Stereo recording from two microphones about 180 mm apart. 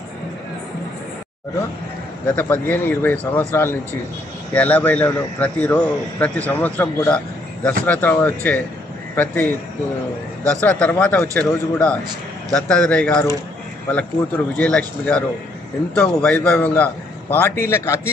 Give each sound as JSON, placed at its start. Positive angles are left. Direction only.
{"t": 2.2, "sound": "a man's voice", "side_deg": 10}
{"t": 14.6, "sound": "a man's voice", "side_deg": 5}